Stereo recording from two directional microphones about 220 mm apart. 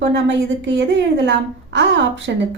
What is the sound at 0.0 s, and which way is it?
A woman's voice, 55° right (ahead or behind).